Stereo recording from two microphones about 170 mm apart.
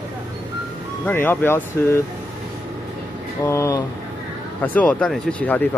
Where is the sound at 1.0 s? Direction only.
10° left (ahead or behind).